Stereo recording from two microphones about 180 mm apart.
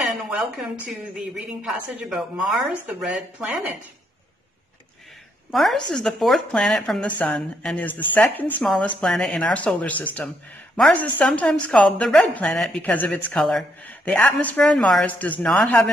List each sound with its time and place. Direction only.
1.3 s a woman's voice: 5° right (ahead or behind)
5.5 s a woman's voice: centre (ahead or behind)